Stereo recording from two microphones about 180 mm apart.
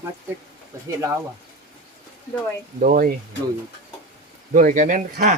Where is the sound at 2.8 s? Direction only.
50° right (ahead or behind).